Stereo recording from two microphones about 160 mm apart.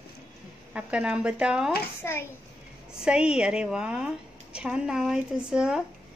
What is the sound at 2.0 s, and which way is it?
Speech, 15° left (ahead or behind).